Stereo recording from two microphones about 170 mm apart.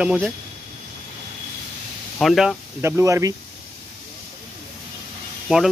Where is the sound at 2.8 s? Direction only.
15° right (ahead or behind).